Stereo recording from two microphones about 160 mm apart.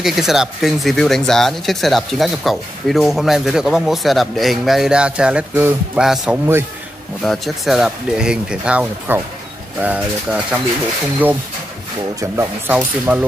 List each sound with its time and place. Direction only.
0.0 s speech: centre (ahead or behind)
12.2 s speech: 20° right (ahead or behind)